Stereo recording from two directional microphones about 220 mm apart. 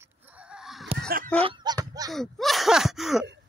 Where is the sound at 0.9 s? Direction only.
45° right (ahead or behind).